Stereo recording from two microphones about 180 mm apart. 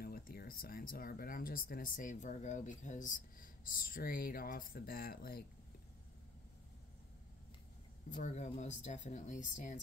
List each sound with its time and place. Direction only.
0.0 s speech: 60° left (ahead or behind)
8.2 s speech: 40° left (ahead or behind)